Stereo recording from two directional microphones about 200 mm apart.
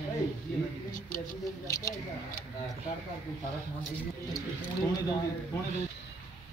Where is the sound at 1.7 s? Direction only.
15° left (ahead or behind).